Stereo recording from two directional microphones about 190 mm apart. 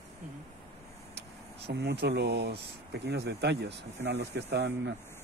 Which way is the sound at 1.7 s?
60° right (ahead or behind).